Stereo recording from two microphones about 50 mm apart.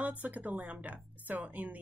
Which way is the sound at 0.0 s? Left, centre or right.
Right.